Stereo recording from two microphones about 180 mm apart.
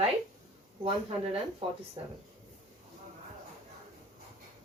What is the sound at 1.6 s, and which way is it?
Speech, 30° right (ahead or behind).